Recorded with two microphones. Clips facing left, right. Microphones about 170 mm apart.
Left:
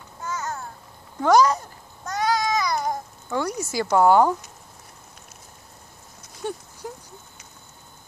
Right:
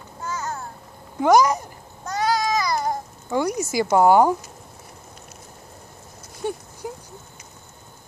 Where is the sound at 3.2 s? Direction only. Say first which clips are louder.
Right 4 dB; 15° right (ahead or behind).